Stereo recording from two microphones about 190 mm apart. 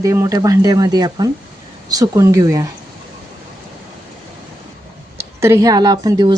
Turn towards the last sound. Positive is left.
turn(degrees=-20)  # may be behind; listen again after turning